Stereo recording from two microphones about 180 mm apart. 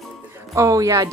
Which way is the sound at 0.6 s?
20° right (ahead or behind).